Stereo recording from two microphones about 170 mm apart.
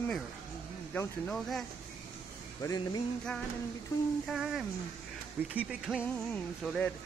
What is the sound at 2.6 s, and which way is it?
Music, 20° left (ahead or behind).